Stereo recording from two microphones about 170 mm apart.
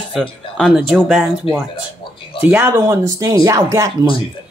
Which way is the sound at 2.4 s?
10° right (ahead or behind).